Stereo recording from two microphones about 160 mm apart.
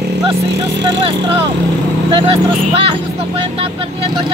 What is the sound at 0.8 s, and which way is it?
Speech, 35° right (ahead or behind).